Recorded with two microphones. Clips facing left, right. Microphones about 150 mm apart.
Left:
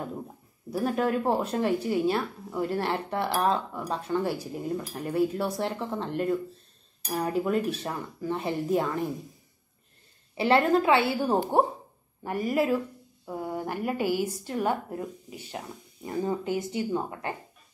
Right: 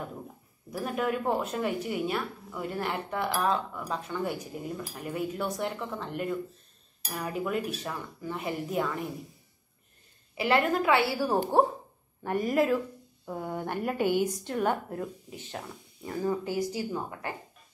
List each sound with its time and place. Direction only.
0.7 s speech: 35° left (ahead or behind)
10.3 s speech: 30° left (ahead or behind)
12.2 s a woman's voice: 5° left (ahead or behind); by 17.3 s 25° left (ahead or behind)